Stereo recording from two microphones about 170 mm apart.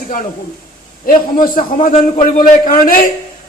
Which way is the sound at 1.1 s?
55° left (ahead or behind).